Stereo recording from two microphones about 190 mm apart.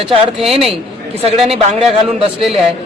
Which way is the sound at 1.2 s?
30° right (ahead or behind).